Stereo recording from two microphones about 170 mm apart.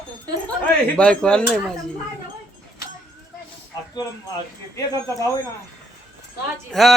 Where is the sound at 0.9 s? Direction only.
5° left (ahead or behind).